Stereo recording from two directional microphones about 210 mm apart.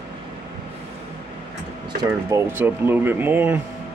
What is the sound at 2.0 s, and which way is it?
Speech, 15° right (ahead or behind).